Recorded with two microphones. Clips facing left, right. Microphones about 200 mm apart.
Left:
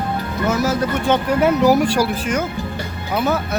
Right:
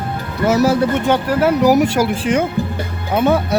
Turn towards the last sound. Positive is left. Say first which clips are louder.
# right 5 dB
turn(degrees=-30)  # may be behind; listen again after turning